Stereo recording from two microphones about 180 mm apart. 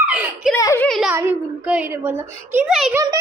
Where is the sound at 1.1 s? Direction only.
10° right (ahead or behind).